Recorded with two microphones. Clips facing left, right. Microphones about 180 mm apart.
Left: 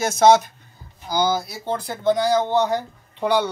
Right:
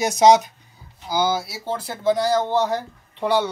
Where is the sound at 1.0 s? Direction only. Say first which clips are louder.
Even; 5° right (ahead or behind).